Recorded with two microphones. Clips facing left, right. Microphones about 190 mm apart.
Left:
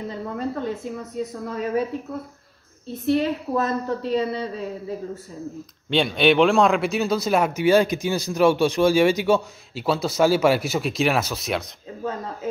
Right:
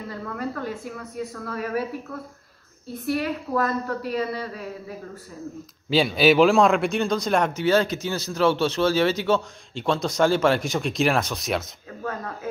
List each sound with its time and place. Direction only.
0.1 s a woman's voice: 25° left (ahead or behind)
2.9 s a woman's voice: 25° left (ahead or behind)
5.9 s speech: 5° right (ahead or behind)
12.0 s a woman's voice: 20° left (ahead or behind)